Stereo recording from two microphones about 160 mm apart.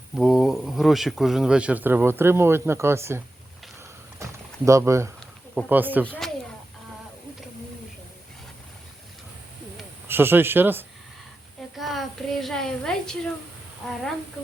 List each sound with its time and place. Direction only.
0.2 s speech: centre (ahead or behind)
4.2 s typing: 20° right (ahead or behind)
5.5 s speech: 10° right (ahead or behind)
6.1 s speech: 5° left (ahead or behind)
10.1 s speech: 15° right (ahead or behind)
11.8 s a woman's voice: centre (ahead or behind)